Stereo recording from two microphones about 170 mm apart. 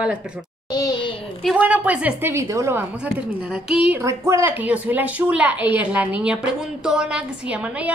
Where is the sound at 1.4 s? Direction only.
5° right (ahead or behind).